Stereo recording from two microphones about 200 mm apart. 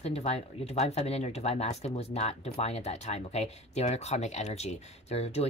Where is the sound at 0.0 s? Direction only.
30° left (ahead or behind).